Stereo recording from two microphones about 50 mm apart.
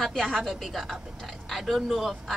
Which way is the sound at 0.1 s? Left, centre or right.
Centre.